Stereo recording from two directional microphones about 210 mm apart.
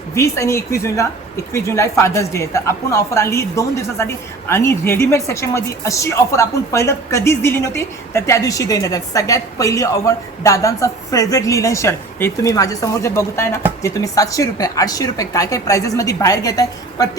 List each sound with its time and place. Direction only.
0.1 s a woman's voice: 15° left (ahead or behind)